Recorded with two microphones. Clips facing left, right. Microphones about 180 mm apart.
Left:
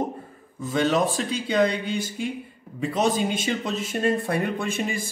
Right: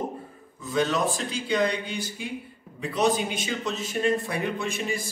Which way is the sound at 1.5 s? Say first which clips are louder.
Left 3 dB; 50° left (ahead or behind).